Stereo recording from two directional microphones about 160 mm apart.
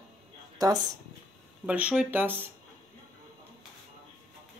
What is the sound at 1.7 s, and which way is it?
Speech, 5° right (ahead or behind).